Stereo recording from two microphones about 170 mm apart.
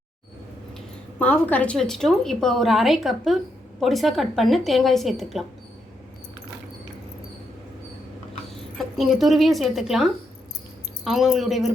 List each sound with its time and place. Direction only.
1.2 s a woman's voice: 10° left (ahead or behind)
9.0 s a woman's voice: centre (ahead or behind)